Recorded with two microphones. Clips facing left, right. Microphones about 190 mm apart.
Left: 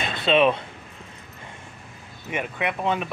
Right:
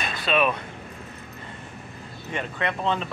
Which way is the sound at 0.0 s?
25° left (ahead or behind).